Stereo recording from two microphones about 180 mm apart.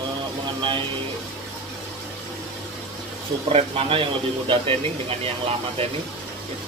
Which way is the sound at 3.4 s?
30° right (ahead or behind).